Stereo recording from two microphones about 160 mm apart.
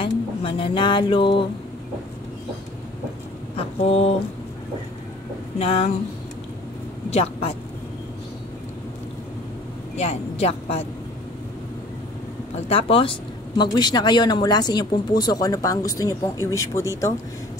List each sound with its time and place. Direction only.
0.0 s speech: 35° left (ahead or behind)
3.5 s speech: 40° left (ahead or behind)
5.6 s speech: 40° left (ahead or behind)
7.1 s speech: 40° left (ahead or behind)
9.9 s speech: 40° left (ahead or behind)
12.5 s speech: 40° left (ahead or behind); by 16.8 s 20° left (ahead or behind)